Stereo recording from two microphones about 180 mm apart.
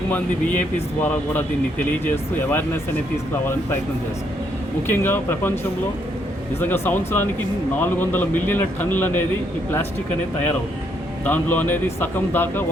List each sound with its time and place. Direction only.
1.0 s a man's voice: 10° left (ahead or behind)
4.9 s a man's voice: 10° left (ahead or behind)
6.6 s a man's voice: 10° left (ahead or behind)
11.3 s a man's voice: 10° left (ahead or behind)